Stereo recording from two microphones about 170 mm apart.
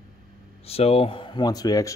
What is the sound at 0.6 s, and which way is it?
Speech, 35° left (ahead or behind).